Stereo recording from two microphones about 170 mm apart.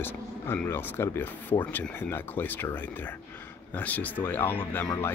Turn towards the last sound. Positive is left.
turn(degrees=10)  # may be behind; listen again after turning